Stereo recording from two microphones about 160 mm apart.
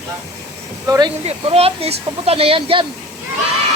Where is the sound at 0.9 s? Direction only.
25° right (ahead or behind).